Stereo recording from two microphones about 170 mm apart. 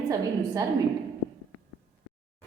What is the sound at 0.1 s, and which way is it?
Speech, 20° right (ahead or behind).